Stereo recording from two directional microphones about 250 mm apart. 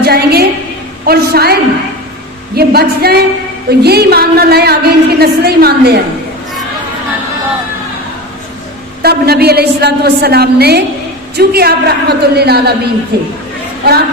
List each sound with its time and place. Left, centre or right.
0.0 s a sound: right
1.0 s a woman's voice: right
2.6 s a woman's voice: right
9.0 s a woman's voice: right